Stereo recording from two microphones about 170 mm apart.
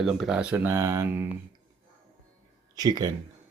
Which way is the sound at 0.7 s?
20° right (ahead or behind).